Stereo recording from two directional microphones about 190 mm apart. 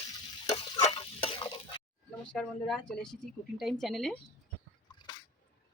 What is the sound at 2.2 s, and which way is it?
Speech, 5° left (ahead or behind).